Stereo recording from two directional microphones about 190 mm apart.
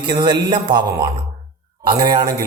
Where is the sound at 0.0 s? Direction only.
25° right (ahead or behind).